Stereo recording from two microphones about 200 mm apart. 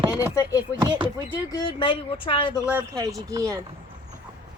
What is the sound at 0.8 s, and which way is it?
Speech, 25° right (ahead or behind).